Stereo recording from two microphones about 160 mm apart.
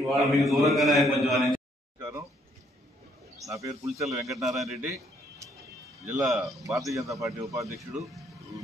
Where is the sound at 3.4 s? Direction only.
20° right (ahead or behind).